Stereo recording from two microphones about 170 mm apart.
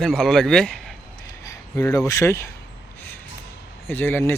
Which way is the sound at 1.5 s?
15° left (ahead or behind).